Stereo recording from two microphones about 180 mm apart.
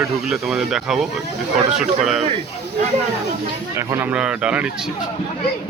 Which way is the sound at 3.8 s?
10° right (ahead or behind).